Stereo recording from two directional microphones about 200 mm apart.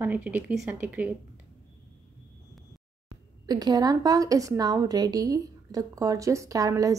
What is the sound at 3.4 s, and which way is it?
A woman's voice, 20° right (ahead or behind).